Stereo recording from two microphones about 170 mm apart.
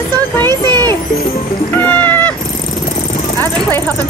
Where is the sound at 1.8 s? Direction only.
10° left (ahead or behind).